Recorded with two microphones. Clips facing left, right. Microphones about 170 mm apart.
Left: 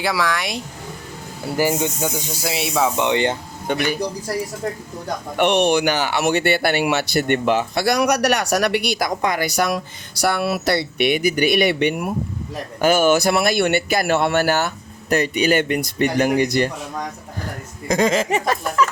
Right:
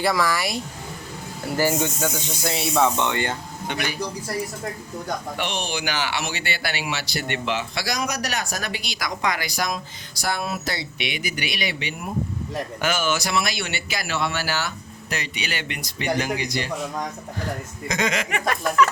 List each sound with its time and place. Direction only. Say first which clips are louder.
0.0 s speech: even; centre (ahead or behind)
1.5 s speech: left 2 dB; 15° left (ahead or behind)
3.0 s speech: left 6 dB; 20° left (ahead or behind)
5.4 s speech: left 12 dB; 65° left (ahead or behind)
6.0 s speech: left 9 dB; 50° left (ahead or behind)
17.8 s speech: left 7 dB; 35° left (ahead or behind)